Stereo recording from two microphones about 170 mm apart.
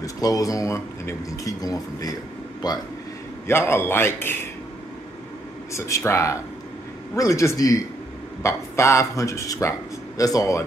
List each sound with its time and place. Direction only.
0.0 s a man's voice: 20° left (ahead or behind)
5.7 s a man's voice: 15° left (ahead or behind)